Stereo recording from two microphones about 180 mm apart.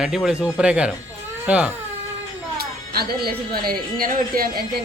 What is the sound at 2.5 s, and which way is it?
Speech, 60° right (ahead or behind).